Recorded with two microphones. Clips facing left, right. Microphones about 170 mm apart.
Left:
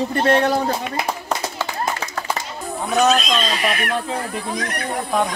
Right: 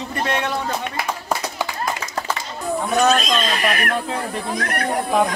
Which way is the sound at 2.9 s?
Centre (ahead or behind).